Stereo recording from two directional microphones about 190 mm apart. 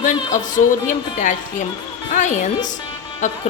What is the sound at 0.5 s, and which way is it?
Speech, 45° left (ahead or behind).